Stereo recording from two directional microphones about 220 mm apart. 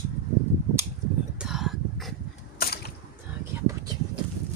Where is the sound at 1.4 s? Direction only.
Centre (ahead or behind).